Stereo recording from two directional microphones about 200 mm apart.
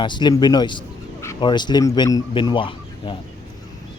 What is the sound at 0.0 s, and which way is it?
Speech, 20° left (ahead or behind).